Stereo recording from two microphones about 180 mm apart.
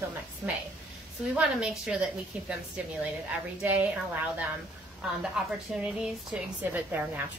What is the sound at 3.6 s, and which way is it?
Speech, 10° right (ahead or behind).